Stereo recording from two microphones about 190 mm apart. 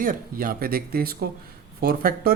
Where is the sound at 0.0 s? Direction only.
50° right (ahead or behind).